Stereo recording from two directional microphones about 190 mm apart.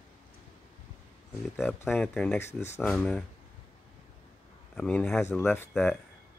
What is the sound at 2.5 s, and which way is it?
Speech, 35° left (ahead or behind).